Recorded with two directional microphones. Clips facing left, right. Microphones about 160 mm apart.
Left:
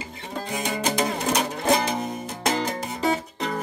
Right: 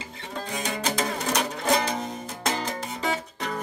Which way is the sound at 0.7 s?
10° left (ahead or behind).